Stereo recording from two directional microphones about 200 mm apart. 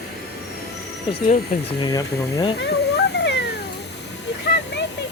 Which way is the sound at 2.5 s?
55° left (ahead or behind).